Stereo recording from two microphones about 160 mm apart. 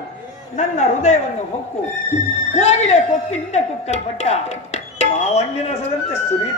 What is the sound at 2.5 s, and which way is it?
Speech, 45° left (ahead or behind).